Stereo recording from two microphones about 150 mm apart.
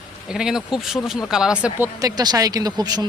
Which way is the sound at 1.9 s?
25° right (ahead or behind).